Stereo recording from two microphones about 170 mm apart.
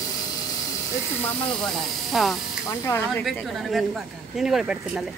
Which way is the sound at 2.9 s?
15° left (ahead or behind).